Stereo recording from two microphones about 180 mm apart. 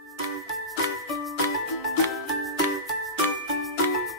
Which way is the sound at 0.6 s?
Centre (ahead or behind).